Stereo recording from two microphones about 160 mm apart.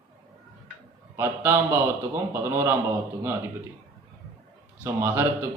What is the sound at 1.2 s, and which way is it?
Speech, 15° right (ahead or behind).